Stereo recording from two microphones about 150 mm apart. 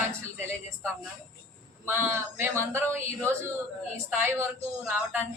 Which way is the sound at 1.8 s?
15° right (ahead or behind).